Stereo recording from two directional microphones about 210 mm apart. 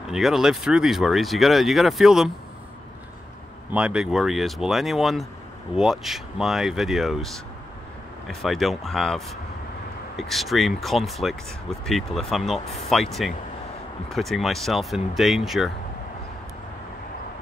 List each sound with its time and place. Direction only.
0.1 s speech: centre (ahead or behind)
3.7 s speech: 5° right (ahead or behind)
12.5 s speech: 30° left (ahead or behind)
12.9 s speech: centre (ahead or behind)